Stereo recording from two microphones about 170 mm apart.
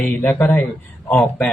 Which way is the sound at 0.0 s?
10° left (ahead or behind).